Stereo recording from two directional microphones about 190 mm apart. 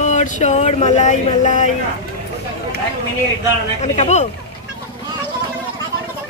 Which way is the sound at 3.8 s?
35° left (ahead or behind).